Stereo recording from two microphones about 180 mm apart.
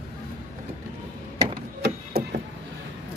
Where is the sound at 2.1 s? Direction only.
60° right (ahead or behind).